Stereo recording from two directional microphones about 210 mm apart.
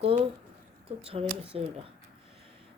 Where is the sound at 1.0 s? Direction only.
25° right (ahead or behind).